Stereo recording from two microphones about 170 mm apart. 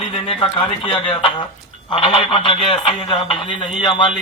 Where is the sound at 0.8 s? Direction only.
30° left (ahead or behind).